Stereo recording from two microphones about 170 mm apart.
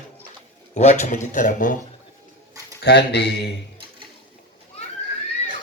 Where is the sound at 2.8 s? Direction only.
75° left (ahead or behind).